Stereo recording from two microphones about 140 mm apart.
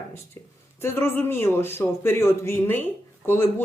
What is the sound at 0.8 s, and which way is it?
Speech, 15° left (ahead or behind).